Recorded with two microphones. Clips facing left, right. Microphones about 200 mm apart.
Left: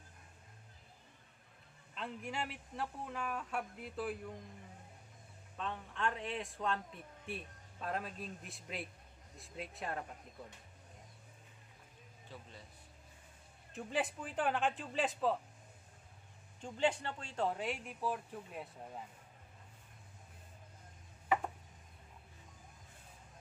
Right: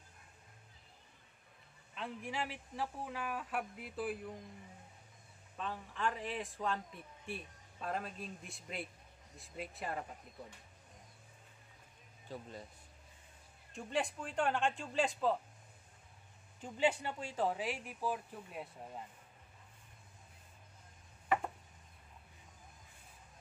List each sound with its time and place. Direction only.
2.0 s a man's voice: centre (ahead or behind)
5.6 s a man's voice: centre (ahead or behind)
12.3 s speech: 45° right (ahead or behind)
13.7 s a man's voice: 5° left (ahead or behind)
16.6 s a man's voice: 10° right (ahead or behind)